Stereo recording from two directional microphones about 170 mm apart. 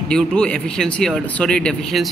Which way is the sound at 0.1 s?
5° left (ahead or behind).